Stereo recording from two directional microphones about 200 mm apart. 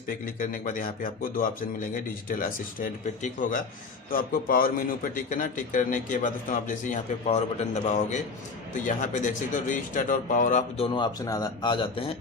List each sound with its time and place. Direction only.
0.4 s a man's voice: 40° left (ahead or behind)
10.9 s speech: 20° left (ahead or behind)